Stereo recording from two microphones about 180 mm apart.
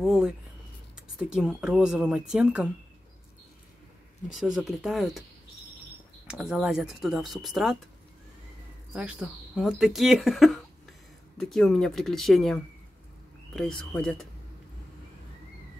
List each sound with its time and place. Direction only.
0.0 s speech: centre (ahead or behind)
4.3 s speech: centre (ahead or behind)
6.2 s speech: 5° right (ahead or behind)
8.9 s speech: 5° right (ahead or behind)